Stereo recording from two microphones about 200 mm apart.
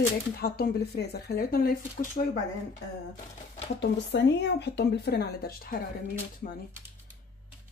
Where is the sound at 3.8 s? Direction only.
60° left (ahead or behind).